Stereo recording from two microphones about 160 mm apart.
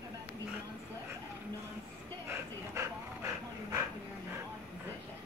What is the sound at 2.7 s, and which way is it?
Dog, 20° right (ahead or behind).